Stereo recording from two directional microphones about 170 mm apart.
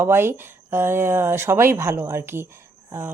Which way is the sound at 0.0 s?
15° right (ahead or behind).